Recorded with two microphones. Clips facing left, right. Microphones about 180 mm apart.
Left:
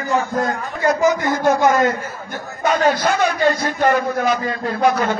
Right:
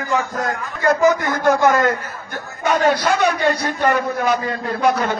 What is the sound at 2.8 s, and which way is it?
A woman's voice, 50° left (ahead or behind).